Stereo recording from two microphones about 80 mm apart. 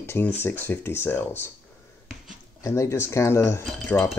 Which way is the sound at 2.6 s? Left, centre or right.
Left.